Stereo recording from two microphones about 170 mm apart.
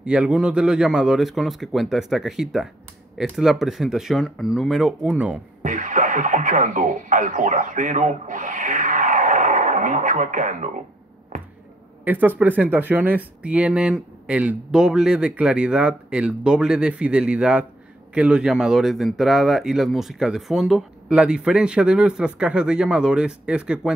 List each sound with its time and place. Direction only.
0.0 s speech: 5° right (ahead or behind)
5.6 s speech: 50° right (ahead or behind)
11.3 s a sound: 50° right (ahead or behind)
12.0 s speech: 10° right (ahead or behind)